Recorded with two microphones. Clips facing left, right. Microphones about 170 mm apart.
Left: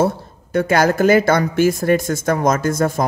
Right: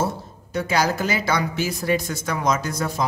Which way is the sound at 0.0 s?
55° left (ahead or behind).